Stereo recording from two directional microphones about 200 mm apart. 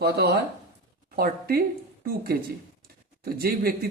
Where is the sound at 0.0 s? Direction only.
55° right (ahead or behind).